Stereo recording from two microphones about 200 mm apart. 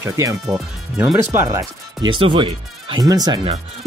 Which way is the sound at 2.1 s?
25° right (ahead or behind).